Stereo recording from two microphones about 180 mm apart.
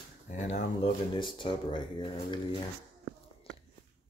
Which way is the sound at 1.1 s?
25° left (ahead or behind).